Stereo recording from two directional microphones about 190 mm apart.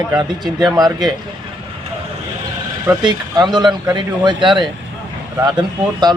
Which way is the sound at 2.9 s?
20° right (ahead or behind).